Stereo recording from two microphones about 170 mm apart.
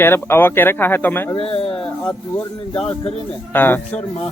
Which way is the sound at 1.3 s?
35° left (ahead or behind).